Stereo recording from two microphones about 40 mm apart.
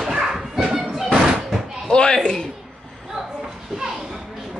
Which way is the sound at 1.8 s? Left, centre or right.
Centre.